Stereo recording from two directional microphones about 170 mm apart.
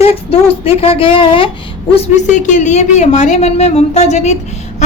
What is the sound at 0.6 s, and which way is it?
Speech, 35° left (ahead or behind).